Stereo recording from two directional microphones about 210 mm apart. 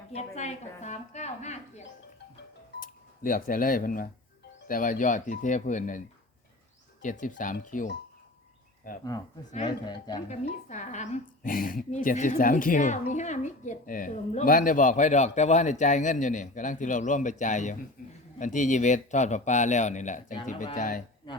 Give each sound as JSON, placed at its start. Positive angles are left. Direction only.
{"t": 0.1, "sound": "a woman's voice", "side_deg": 30}
{"t": 7.0, "sound": "a woman's voice", "side_deg": 40}
{"t": 9.6, "sound": "speech", "side_deg": 20}
{"t": 10.2, "sound": "a woman's voice", "side_deg": 35}